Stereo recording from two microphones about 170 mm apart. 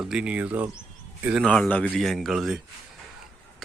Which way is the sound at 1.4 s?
5° left (ahead or behind).